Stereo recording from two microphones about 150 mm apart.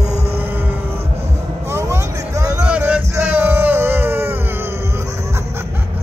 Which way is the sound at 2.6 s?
10° right (ahead or behind).